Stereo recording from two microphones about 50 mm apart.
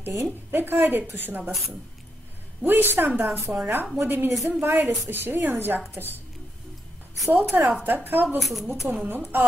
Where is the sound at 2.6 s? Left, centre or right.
Right.